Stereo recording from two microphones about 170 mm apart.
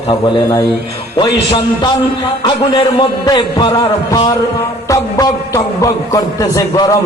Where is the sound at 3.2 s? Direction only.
25° left (ahead or behind).